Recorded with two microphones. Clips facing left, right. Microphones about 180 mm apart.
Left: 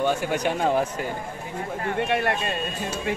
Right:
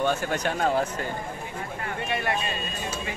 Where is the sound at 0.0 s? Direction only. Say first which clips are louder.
Left 2 dB; 15° left (ahead or behind).